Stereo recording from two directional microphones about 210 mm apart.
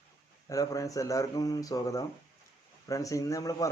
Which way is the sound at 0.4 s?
15° left (ahead or behind).